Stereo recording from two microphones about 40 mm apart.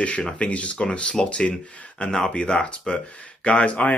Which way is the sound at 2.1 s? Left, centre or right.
Centre.